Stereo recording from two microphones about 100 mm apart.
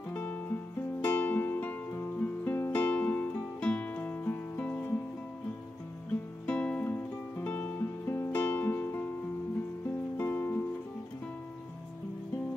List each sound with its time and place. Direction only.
0.1 s music: 20° left (ahead or behind)
6.4 s music: 15° left (ahead or behind)
10.1 s music: 25° left (ahead or behind)